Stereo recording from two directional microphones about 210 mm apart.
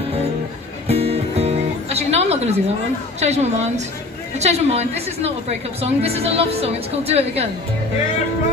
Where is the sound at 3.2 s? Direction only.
30° right (ahead or behind).